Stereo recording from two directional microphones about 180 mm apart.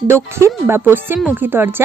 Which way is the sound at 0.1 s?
15° right (ahead or behind).